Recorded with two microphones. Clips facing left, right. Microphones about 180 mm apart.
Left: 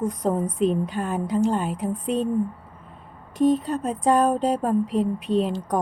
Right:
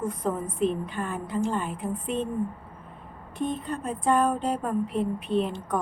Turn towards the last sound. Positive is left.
turn(degrees=40)  # may be behind; listen again after turning